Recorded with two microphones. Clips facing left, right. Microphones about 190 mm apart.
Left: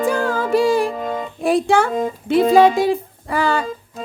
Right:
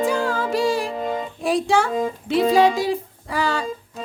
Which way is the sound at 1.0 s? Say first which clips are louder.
Left 1 dB; centre (ahead or behind).